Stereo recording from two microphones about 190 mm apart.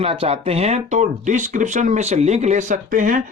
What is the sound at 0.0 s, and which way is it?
Speech, 30° right (ahead or behind).